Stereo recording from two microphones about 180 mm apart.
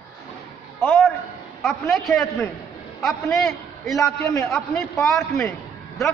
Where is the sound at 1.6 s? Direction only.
Centre (ahead or behind).